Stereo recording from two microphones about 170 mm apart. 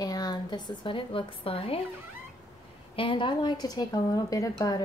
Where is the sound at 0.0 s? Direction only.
25° left (ahead or behind).